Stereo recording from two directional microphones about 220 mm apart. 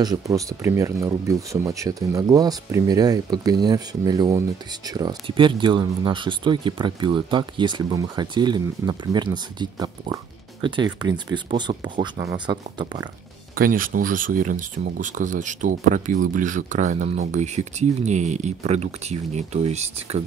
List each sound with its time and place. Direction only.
0.0 s speech: 15° right (ahead or behind)
13.6 s speech: 40° right (ahead or behind)